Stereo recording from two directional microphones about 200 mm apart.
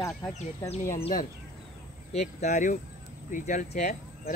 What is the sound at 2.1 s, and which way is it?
Speech, 35° left (ahead or behind).